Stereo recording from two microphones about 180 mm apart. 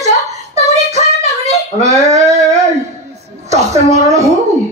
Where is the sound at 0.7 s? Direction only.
40° right (ahead or behind).